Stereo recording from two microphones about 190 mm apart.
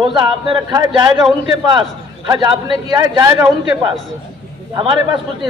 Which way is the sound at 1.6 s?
20° right (ahead or behind).